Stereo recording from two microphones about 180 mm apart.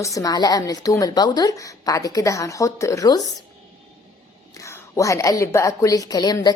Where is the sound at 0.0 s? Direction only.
20° left (ahead or behind).